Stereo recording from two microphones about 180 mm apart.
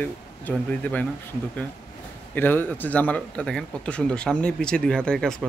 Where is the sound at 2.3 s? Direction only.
10° left (ahead or behind).